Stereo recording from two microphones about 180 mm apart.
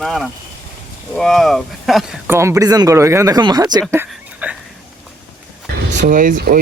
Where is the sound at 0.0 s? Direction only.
Centre (ahead or behind).